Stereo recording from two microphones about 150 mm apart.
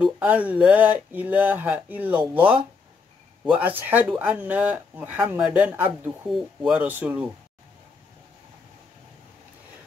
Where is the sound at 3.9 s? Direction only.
10° right (ahead or behind).